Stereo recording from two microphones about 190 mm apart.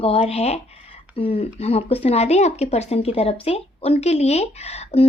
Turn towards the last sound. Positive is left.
turn(degrees=35)  # may be behind; listen again after turning